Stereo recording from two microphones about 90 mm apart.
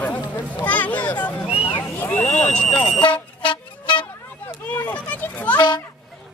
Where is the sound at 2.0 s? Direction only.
15° left (ahead or behind).